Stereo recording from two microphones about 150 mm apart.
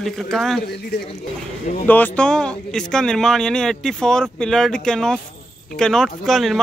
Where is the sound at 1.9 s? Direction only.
10° left (ahead or behind).